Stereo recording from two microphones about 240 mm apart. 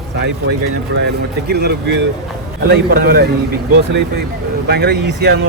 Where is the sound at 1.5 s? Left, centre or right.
Right.